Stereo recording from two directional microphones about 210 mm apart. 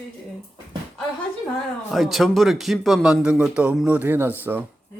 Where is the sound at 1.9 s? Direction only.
Centre (ahead or behind).